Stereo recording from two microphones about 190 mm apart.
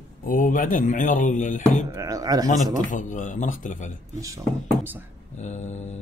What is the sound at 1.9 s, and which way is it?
Speech, 20° right (ahead or behind).